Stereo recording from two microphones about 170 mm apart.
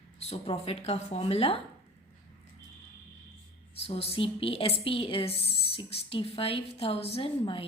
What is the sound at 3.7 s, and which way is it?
Speech, 35° left (ahead or behind).